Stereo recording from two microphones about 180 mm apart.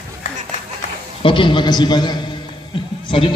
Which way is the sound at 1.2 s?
25° left (ahead or behind).